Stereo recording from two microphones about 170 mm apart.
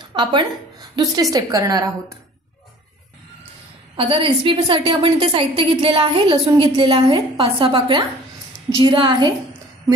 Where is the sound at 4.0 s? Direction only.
30° right (ahead or behind).